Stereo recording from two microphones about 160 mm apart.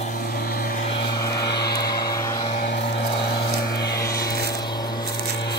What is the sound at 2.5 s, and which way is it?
Vehicle, 65° left (ahead or behind).